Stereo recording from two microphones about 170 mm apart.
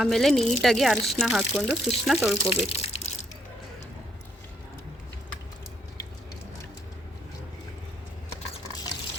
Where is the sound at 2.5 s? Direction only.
35° left (ahead or behind).